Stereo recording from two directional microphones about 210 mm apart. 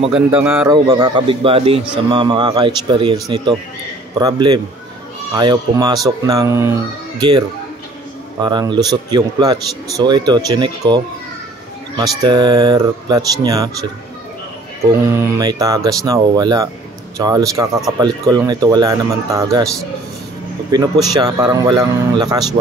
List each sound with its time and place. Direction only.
0.1 s a man's voice: 5° right (ahead or behind)
12.0 s a man's voice: 20° right (ahead or behind)
15.0 s speech: 15° right (ahead or behind)
20.7 s a man's voice: 20° right (ahead or behind)